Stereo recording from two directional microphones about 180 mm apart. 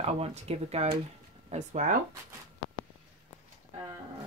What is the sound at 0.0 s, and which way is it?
Speech, 35° right (ahead or behind).